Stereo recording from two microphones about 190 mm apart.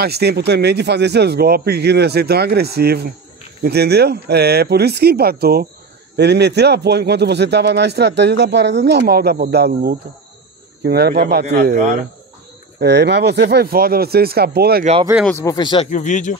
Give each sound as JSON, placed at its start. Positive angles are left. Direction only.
{"t": 0.0, "sound": "speech", "side_deg": -60}
{"t": 15.4, "sound": "speech", "side_deg": 25}
{"t": 15.9, "sound": "speech", "side_deg": 40}